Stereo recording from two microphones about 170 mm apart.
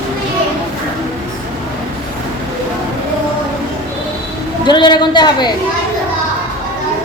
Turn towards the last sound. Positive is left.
turn(degrees=25)  # may be behind; listen again after turning